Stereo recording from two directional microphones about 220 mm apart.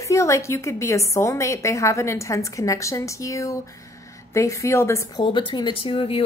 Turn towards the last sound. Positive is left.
turn(degrees=25)  # may be behind; listen again after turning